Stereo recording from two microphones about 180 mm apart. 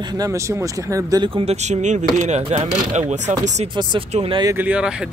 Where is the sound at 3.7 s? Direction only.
25° right (ahead or behind).